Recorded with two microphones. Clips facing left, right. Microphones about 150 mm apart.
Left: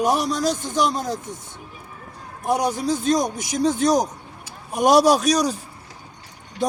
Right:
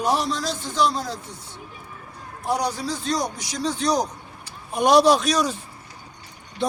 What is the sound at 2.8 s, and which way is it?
Speech, 50° left (ahead or behind).